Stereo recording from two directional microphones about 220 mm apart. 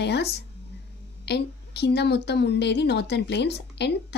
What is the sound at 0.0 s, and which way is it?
A woman's voice, 50° left (ahead or behind).